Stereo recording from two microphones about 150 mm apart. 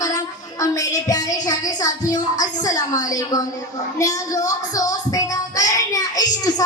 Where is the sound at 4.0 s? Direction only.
20° left (ahead or behind).